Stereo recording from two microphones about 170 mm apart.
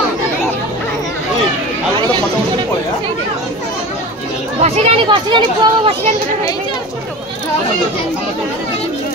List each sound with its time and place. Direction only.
4.6 s speech: 40° right (ahead or behind)